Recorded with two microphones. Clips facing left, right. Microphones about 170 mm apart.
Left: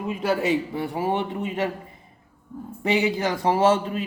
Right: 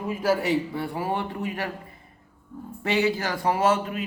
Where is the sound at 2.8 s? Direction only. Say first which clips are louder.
Left 2 dB; 15° left (ahead or behind).